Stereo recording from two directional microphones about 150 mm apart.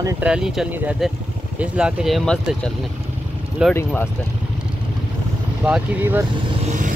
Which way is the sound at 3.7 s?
15° left (ahead or behind).